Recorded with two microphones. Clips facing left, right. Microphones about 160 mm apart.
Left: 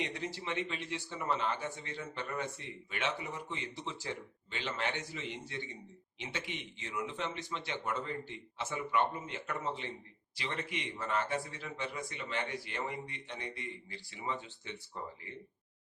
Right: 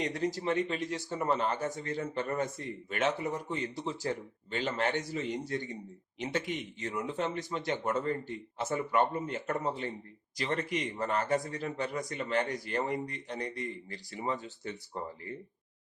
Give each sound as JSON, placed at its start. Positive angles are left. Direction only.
{"t": 0.0, "sound": "speech", "side_deg": -40}